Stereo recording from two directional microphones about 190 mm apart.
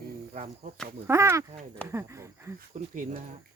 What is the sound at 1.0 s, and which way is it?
Speech, 15° right (ahead or behind).